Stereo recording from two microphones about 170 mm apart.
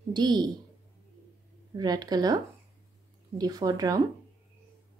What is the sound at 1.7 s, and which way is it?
A woman's voice, 25° right (ahead or behind).